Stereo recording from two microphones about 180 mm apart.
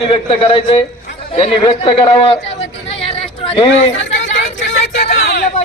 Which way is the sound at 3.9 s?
90° left.